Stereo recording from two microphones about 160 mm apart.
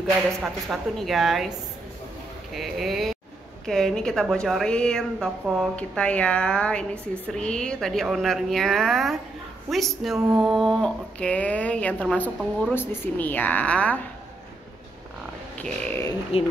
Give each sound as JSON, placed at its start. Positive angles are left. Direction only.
{"t": 0.4, "sound": "a woman's voice", "side_deg": 0}
{"t": 2.5, "sound": "a woman's voice", "side_deg": 0}
{"t": 15.5, "sound": "a woman's voice", "side_deg": 5}
{"t": 16.3, "sound": "speech", "side_deg": 35}